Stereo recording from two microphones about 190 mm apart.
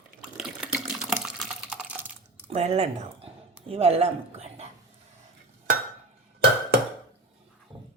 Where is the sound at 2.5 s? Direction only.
35° right (ahead or behind).